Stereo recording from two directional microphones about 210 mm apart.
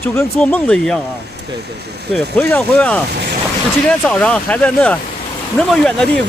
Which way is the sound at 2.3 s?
5° left (ahead or behind).